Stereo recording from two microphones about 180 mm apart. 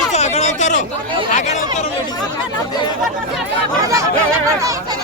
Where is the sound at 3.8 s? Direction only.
15° right (ahead or behind).